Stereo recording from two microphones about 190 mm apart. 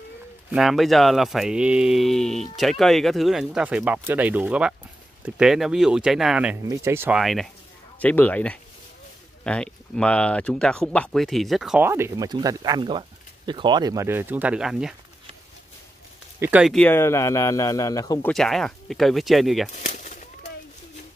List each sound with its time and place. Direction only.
0.5 s speech: centre (ahead or behind)
7.2 s speech: centre (ahead or behind)
16.3 s speech: 10° right (ahead or behind)
16.7 s speech: 10° left (ahead or behind)
18.3 s speech: centre (ahead or behind)
19.7 s a sound: 40° left (ahead or behind)